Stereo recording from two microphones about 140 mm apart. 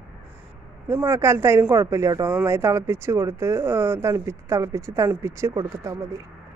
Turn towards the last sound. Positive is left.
turn(degrees=-25)  # may be behind; listen again after turning